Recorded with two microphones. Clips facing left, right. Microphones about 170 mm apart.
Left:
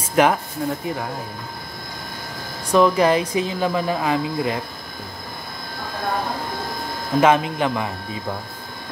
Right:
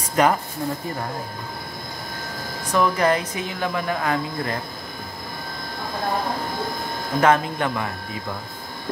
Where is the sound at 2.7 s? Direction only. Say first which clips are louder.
Left 4 dB; 20° left (ahead or behind).